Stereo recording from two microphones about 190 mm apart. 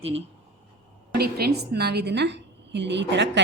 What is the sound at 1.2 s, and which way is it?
A woman's voice, 55° right (ahead or behind).